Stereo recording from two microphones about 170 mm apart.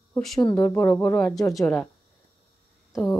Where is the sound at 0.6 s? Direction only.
15° left (ahead or behind).